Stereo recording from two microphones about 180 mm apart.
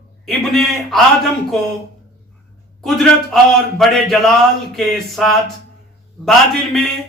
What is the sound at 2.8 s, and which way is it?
A man's voice, centre (ahead or behind).